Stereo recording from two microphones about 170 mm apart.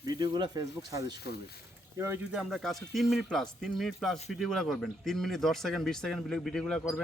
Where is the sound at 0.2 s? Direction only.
25° right (ahead or behind).